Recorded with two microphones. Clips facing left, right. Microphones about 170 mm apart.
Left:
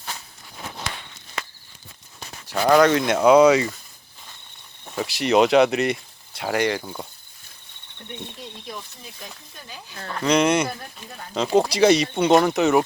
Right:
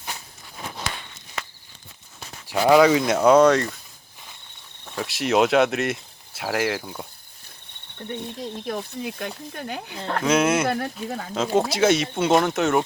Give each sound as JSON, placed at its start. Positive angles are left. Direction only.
{"t": 2.5, "sound": "speech", "side_deg": -10}
{"t": 4.9, "sound": "speech", "side_deg": 0}
{"t": 7.9, "sound": "cricket", "side_deg": -40}
{"t": 8.6, "sound": "speech", "side_deg": -65}
{"t": 10.2, "sound": "speech", "side_deg": -5}
{"t": 10.7, "sound": "speech", "side_deg": -70}
{"t": 11.3, "sound": "speech", "side_deg": 0}